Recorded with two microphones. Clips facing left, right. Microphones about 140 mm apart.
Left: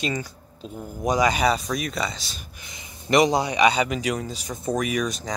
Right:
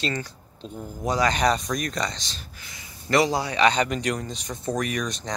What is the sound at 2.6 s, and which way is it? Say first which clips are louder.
A man's voice: left 1 dB; 20° left (ahead or behind).